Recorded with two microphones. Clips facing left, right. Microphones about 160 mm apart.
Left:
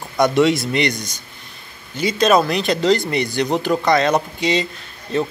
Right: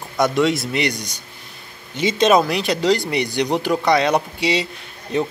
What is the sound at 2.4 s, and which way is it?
Speech, 10° right (ahead or behind).